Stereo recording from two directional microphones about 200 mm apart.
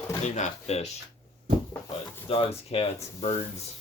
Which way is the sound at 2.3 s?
30° left (ahead or behind).